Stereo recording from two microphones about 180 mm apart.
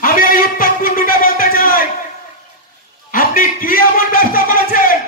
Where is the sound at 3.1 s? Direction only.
50° left (ahead or behind).